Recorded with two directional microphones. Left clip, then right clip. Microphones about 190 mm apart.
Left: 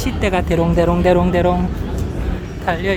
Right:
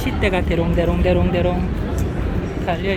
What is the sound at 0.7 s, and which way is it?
Speech, 25° left (ahead or behind).